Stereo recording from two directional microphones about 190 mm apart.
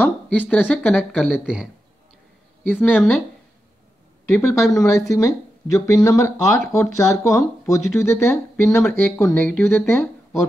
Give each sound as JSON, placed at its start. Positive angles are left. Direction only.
{"t": 0.0, "sound": "speech", "side_deg": 10}
{"t": 2.7, "sound": "speech", "side_deg": 10}
{"t": 4.3, "sound": "speech", "side_deg": 15}